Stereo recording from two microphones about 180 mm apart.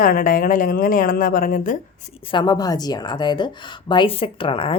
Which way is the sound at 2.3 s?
25° left (ahead or behind).